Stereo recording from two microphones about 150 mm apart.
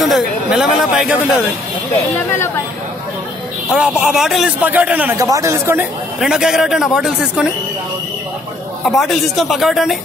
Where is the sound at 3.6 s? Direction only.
5° right (ahead or behind).